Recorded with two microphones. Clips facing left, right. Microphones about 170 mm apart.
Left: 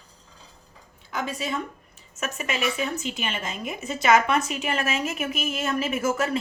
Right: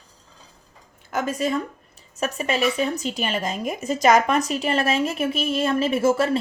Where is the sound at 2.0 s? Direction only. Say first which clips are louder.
Right 6 dB; 35° right (ahead or behind).